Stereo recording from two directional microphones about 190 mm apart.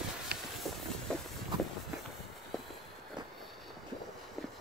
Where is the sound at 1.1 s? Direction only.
5° left (ahead or behind).